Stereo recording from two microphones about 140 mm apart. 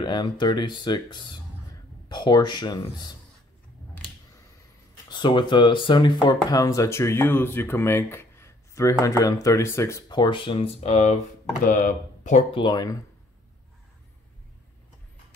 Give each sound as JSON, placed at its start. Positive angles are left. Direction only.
{"t": 0.0, "sound": "speech", "side_deg": 30}
{"t": 5.1, "sound": "speech", "side_deg": 35}
{"t": 11.6, "sound": "speech", "side_deg": 70}
{"t": 12.4, "sound": "speech", "side_deg": 35}